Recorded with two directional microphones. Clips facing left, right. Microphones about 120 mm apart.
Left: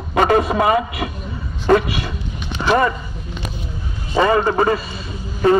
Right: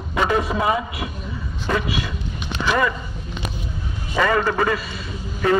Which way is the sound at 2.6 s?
40° left (ahead or behind).